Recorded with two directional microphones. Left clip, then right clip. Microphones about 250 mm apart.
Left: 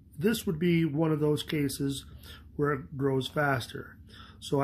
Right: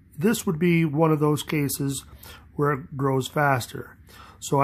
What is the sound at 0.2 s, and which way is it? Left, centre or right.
Speech, right.